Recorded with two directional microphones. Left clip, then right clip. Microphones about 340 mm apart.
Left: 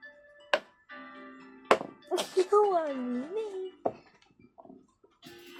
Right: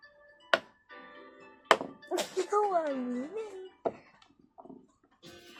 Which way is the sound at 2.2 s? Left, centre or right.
Left.